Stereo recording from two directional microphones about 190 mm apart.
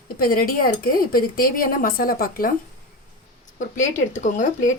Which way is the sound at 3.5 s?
40° left (ahead or behind).